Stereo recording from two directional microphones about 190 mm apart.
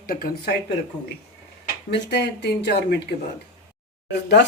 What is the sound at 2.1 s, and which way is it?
Speech, 60° left (ahead or behind).